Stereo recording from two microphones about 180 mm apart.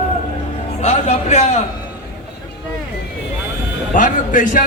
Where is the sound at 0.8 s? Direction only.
40° left (ahead or behind).